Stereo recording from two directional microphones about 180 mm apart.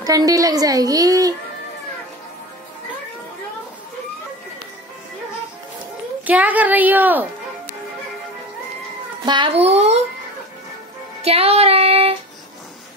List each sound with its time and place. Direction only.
0.0 s a woman's voice: 20° right (ahead or behind)
6.2 s a child's voice: 10° right (ahead or behind)
9.2 s a child's voice: 25° right (ahead or behind)
11.2 s child singing: 35° right (ahead or behind)